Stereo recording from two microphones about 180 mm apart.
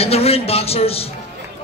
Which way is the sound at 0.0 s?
35° left (ahead or behind).